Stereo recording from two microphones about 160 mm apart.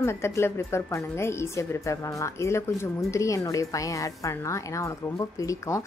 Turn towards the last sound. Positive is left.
turn(degrees=20)  # may be behind; listen again after turning